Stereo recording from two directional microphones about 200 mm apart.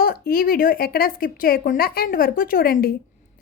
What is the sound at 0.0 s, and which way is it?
A woman's voice, 45° left (ahead or behind).